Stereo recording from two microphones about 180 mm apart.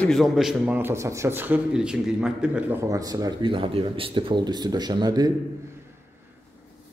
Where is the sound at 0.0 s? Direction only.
Centre (ahead or behind); by 5.3 s 20° right (ahead or behind).